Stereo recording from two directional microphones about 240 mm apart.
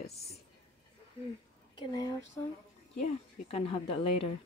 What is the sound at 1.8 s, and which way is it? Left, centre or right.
Speech, centre.